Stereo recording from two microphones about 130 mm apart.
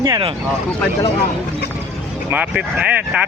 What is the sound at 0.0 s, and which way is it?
Speech, 30° right (ahead or behind).